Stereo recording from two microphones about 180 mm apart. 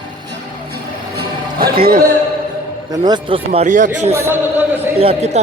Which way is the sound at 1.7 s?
55° right (ahead or behind).